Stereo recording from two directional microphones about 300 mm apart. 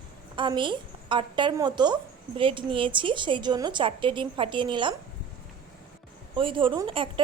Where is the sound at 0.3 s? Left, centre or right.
Centre.